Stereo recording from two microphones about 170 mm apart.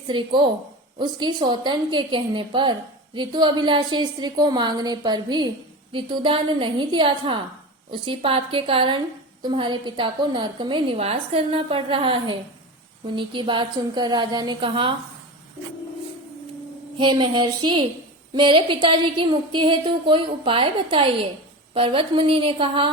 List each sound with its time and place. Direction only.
0.1 s a woman's voice: 30° right (ahead or behind)
17.0 s a woman's voice: 30° right (ahead or behind)